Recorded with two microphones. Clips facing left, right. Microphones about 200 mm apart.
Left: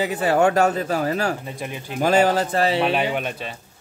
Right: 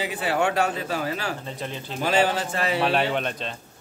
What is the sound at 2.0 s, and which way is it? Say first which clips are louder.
Speech: left 5 dB; 45° left (ahead or behind).